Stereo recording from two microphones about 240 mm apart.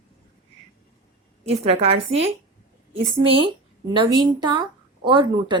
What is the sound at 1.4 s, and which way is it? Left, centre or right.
A woman's voice, right.